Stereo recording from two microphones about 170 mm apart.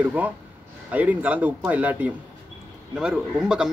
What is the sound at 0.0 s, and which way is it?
Speech, 10° right (ahead or behind).